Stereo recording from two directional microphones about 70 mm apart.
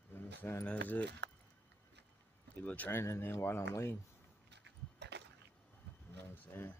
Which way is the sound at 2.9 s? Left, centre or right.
Left.